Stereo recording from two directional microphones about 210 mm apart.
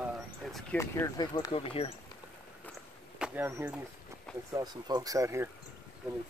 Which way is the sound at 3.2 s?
10° right (ahead or behind).